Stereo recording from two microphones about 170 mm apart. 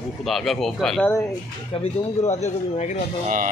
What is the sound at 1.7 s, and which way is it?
Speech, 40° left (ahead or behind).